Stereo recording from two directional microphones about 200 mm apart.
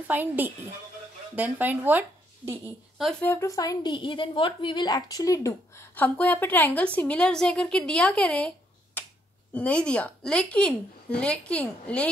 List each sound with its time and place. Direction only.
0.1 s a woman's voice: 10° right (ahead or behind)
3.0 s a woman's voice: 5° left (ahead or behind)